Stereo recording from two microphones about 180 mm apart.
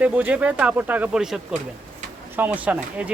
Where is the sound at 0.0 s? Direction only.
5° right (ahead or behind).